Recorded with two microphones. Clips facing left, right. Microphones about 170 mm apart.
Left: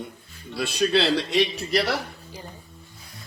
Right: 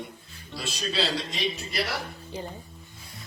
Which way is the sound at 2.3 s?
25° right (ahead or behind).